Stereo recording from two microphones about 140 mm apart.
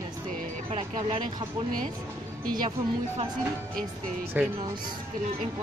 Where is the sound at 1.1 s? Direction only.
35° right (ahead or behind).